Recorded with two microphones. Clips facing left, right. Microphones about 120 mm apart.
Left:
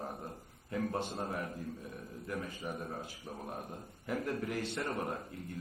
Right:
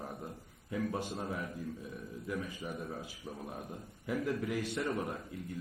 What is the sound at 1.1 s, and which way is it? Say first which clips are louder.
A man's voice: left 1 dB; 45° left (ahead or behind).